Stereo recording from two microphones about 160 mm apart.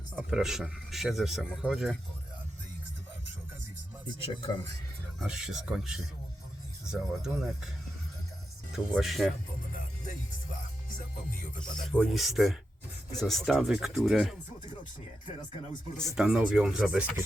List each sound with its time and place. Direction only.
0.2 s speech: 5° right (ahead or behind)
4.0 s speech: 30° left (ahead or behind)
5.2 s speech: 5° right (ahead or behind)
8.7 s speech: centre (ahead or behind)
10.9 s music: 55° left (ahead or behind)
11.8 s speech: 5° left (ahead or behind)
16.1 s speech: 5° right (ahead or behind)